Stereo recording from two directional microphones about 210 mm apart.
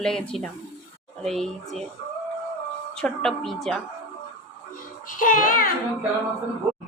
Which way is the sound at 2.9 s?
Centre (ahead or behind).